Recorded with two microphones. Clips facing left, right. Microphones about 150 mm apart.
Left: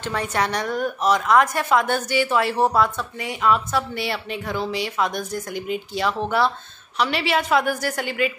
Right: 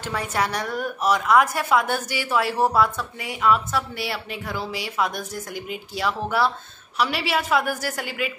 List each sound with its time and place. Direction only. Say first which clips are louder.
0.0 s a woman's voice: left 2 dB; 5° right (ahead or behind)